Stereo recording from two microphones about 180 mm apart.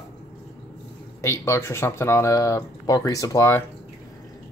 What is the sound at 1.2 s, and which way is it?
Speech, 15° left (ahead or behind).